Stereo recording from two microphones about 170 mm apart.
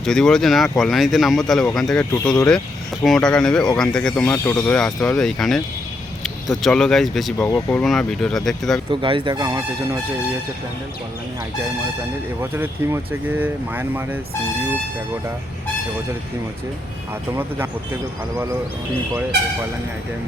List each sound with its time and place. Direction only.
0.0 s speech: 5° left (ahead or behind)
7.3 s speech: 15° left (ahead or behind)
8.9 s speech: 30° right (ahead or behind)
12.4 s speech: 15° right (ahead or behind)